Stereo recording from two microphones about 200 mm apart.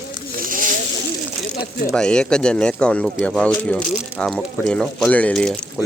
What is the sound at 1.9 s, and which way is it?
Speech, 5° left (ahead or behind).